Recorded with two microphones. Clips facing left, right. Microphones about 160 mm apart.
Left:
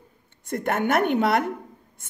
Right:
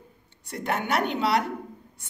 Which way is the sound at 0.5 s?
50° left (ahead or behind).